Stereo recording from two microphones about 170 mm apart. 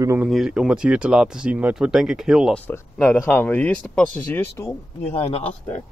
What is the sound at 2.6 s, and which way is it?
Speech, 10° left (ahead or behind).